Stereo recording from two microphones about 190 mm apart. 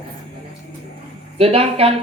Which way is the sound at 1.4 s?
30° right (ahead or behind).